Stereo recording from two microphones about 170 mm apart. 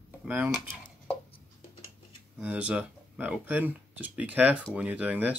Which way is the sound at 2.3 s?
10° right (ahead or behind).